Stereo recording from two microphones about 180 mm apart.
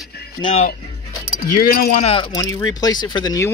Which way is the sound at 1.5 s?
55° left (ahead or behind).